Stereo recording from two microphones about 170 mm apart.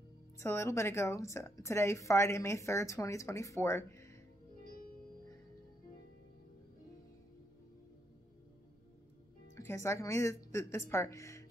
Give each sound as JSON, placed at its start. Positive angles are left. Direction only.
{"t": 0.4, "sound": "a woman's voice", "side_deg": 15}
{"t": 9.6, "sound": "a woman's voice", "side_deg": 15}